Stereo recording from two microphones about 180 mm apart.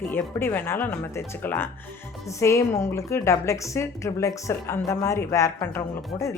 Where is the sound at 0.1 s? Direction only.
10° left (ahead or behind).